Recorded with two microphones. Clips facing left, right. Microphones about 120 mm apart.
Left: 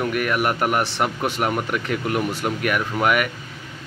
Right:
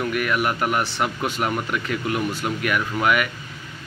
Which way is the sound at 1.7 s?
50° left (ahead or behind).